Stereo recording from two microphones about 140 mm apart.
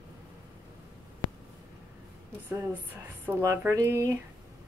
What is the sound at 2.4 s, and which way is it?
Speech, 15° right (ahead or behind).